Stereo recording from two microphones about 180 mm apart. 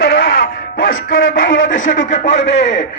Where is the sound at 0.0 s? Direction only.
65° left (ahead or behind).